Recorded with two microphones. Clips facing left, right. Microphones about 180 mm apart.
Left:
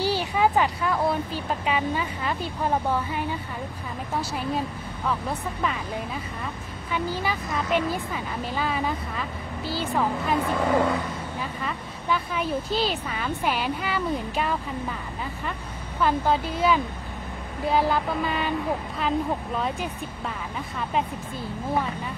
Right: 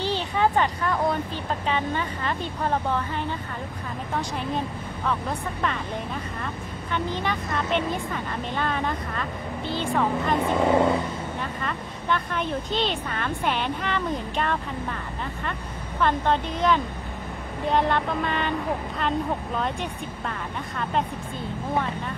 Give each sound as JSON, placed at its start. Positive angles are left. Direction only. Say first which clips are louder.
{"t": 0.0, "sound": "a woman's voice", "louder": "left 1 dB", "side_deg": 10}
{"t": 6.9, "sound": "a woman's voice", "louder": "even", "side_deg": 5}
{"t": 10.4, "sound": "speech", "louder": "right 3 dB", "side_deg": -25}
{"t": 11.6, "sound": "a woman's voice", "louder": "right 1 dB", "side_deg": 5}
{"t": 16.0, "sound": "a woman's voice", "louder": "even", "side_deg": 5}